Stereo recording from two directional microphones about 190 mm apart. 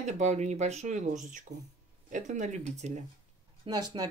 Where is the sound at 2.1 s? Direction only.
40° right (ahead or behind).